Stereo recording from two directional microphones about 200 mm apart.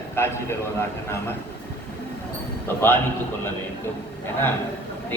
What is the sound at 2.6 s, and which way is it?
Speech, 10° left (ahead or behind).